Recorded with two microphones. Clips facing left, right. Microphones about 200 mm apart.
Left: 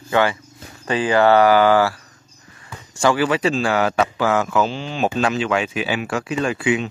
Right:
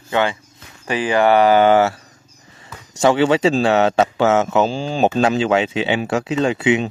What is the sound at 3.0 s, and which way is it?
A man's voice, 25° right (ahead or behind).